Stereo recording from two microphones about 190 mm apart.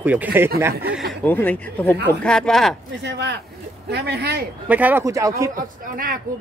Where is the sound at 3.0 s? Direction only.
65° right (ahead or behind).